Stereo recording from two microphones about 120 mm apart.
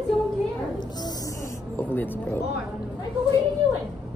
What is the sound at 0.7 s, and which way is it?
Music, 30° left (ahead or behind).